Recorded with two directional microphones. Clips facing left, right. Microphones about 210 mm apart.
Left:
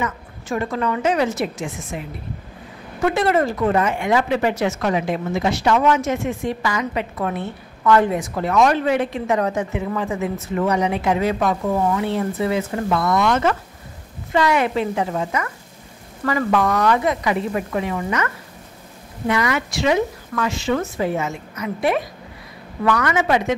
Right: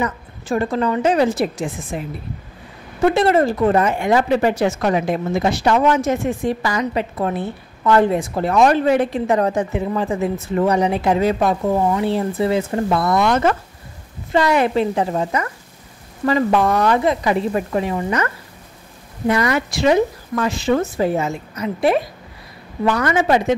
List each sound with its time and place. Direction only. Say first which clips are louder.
0.0 s speech: right 3 dB; 35° right (ahead or behind)
3.1 s speech: right 3 dB; 30° right (ahead or behind)